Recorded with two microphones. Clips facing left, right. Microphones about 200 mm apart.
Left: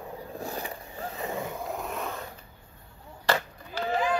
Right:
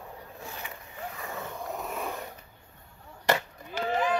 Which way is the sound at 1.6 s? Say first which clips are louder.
Left 1 dB; 5° right (ahead or behind).